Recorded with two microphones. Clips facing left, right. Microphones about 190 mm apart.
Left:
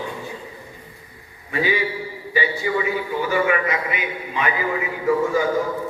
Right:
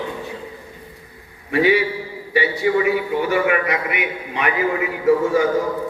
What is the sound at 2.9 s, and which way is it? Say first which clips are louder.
A man's voice: right 3 dB; 70° right (ahead or behind).